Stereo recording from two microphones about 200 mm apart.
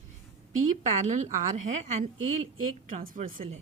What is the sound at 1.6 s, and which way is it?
Speech, 35° right (ahead or behind).